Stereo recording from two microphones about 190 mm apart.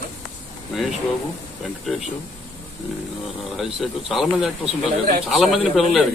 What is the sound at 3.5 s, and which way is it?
Speech, centre (ahead or behind).